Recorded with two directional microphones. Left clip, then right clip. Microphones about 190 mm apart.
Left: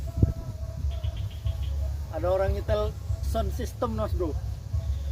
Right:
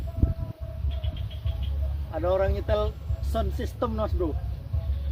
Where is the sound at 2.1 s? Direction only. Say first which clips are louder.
Right 1 dB; centre (ahead or behind).